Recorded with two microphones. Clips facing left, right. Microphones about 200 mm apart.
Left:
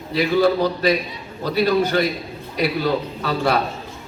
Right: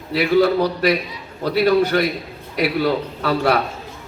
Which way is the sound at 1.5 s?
55° right (ahead or behind).